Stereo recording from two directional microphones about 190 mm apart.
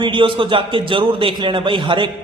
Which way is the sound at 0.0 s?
25° right (ahead or behind).